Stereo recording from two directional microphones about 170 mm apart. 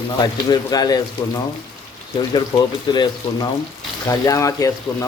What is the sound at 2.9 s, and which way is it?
Speech, 25° left (ahead or behind).